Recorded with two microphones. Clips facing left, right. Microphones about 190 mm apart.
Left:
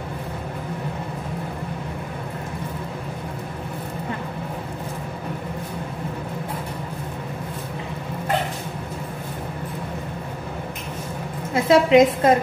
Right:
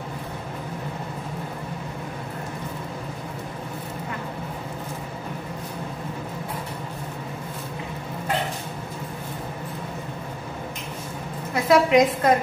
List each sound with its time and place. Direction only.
11.5 s a woman's voice: 25° left (ahead or behind)